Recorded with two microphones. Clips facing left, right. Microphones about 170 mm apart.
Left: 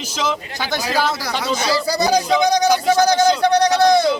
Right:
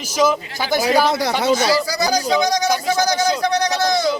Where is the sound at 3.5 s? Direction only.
25° left (ahead or behind).